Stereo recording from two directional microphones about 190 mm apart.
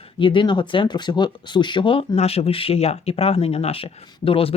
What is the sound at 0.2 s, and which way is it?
Speech, 25° left (ahead or behind).